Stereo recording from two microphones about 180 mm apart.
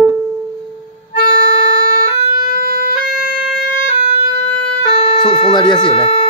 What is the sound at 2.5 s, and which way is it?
Music, 55° right (ahead or behind).